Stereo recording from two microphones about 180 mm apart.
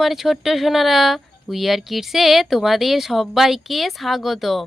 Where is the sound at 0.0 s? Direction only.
Centre (ahead or behind).